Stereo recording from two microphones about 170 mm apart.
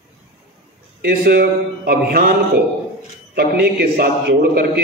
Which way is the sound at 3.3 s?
65° right (ahead or behind).